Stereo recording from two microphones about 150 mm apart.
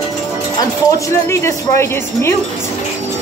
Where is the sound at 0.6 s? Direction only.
25° left (ahead or behind).